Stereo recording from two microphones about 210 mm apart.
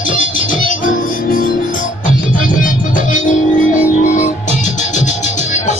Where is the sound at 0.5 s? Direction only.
40° left (ahead or behind).